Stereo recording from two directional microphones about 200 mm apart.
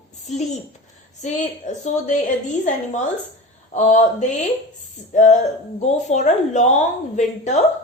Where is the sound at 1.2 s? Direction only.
35° left (ahead or behind).